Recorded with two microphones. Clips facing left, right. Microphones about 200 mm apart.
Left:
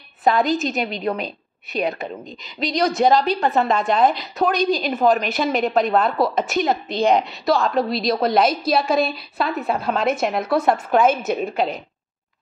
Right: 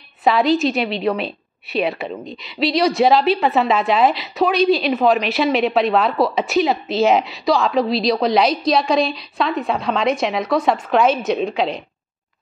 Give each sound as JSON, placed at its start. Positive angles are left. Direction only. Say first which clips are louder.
{"t": 0.5, "sound": "a woman's voice", "louder": "right 4 dB", "side_deg": 45}
{"t": 2.8, "sound": "a woman's voice", "louder": "right 1 dB", "side_deg": 0}
{"t": 4.6, "sound": "a woman's voice", "louder": "right 4 dB", "side_deg": 45}
{"t": 4.9, "sound": "a woman's voice", "louder": "right 2 dB", "side_deg": 0}